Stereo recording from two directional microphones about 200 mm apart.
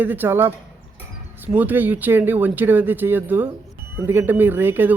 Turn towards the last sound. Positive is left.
turn(degrees=-10)  # may be behind; listen again after turning